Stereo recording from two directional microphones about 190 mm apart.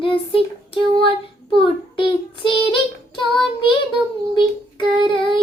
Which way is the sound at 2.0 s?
25° left (ahead or behind).